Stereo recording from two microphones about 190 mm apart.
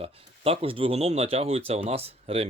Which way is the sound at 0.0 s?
30° right (ahead or behind).